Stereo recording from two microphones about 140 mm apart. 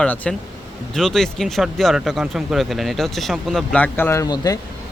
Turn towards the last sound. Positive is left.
turn(degrees=25)  # may be behind; listen again after turning